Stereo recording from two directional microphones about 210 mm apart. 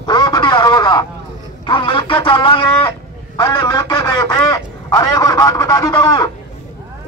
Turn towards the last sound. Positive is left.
turn(degrees=15)  # may be behind; listen again after turning